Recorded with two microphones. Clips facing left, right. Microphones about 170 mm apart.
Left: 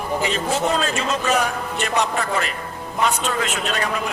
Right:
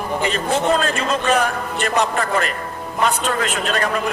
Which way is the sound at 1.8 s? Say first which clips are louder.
Right 3 dB; 55° right (ahead or behind).